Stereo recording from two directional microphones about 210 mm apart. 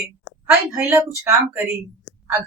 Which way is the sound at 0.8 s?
10° right (ahead or behind).